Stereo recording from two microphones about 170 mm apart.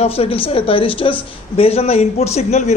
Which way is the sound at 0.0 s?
35° left (ahead or behind).